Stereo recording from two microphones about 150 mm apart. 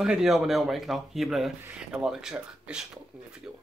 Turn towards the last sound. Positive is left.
turn(degrees=-5)  # may be behind; listen again after turning